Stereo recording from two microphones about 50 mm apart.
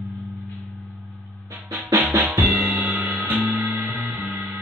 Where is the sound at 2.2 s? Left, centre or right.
Right.